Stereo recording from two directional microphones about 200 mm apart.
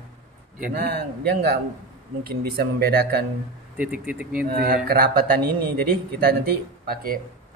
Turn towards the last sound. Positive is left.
turn(degrees=-45)  # may be behind; listen again after turning